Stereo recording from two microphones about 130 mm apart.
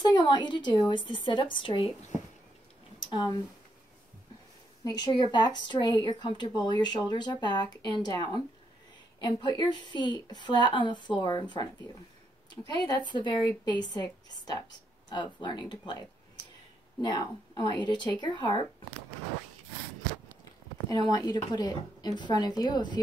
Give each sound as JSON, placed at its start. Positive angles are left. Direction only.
{"t": 0.0, "sound": "speech", "side_deg": 35}
{"t": 3.1, "sound": "speech", "side_deg": 30}
{"t": 4.8, "sound": "speech", "side_deg": 35}
{"t": 17.0, "sound": "speech", "side_deg": 35}
{"t": 21.1, "sound": "speech", "side_deg": 30}